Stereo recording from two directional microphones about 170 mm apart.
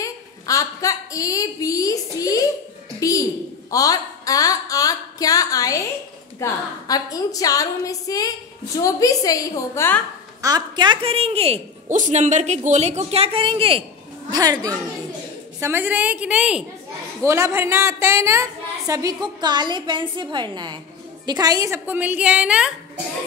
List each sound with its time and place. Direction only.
0.0 s a woman's voice: 20° left (ahead or behind)
3.0 s a sound: 20° left (ahead or behind)
6.4 s a woman's voice: 20° left (ahead or behind)
10.4 s speech: 25° right (ahead or behind)
11.9 s speech: 45° right (ahead or behind)
14.3 s a woman's voice: 20° right (ahead or behind); by 22.7 s 5° right (ahead or behind)